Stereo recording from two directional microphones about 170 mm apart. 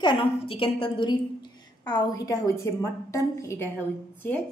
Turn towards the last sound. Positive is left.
turn(degrees=10)  # may be behind; listen again after turning